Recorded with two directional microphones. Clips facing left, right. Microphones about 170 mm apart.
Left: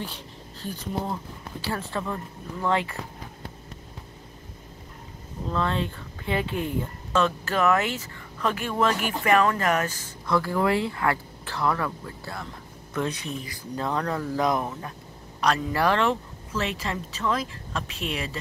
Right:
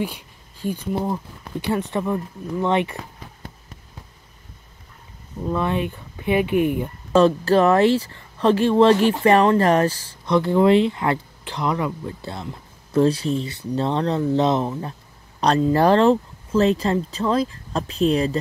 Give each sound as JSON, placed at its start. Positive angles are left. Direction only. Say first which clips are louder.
{"t": 0.0, "sound": "speech", "louder": "right 8 dB", "side_deg": -10}
{"t": 5.5, "sound": "speech", "louder": "right 4 dB", "side_deg": -15}
{"t": 7.1, "sound": "speech", "louder": "right 10 dB", "side_deg": -35}
{"t": 10.2, "sound": "speech", "louder": "right 7 dB", "side_deg": -20}